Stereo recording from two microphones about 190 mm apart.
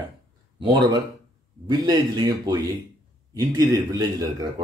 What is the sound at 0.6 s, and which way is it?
Speech, 25° right (ahead or behind).